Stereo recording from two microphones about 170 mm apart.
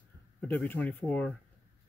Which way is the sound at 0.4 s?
5° left (ahead or behind).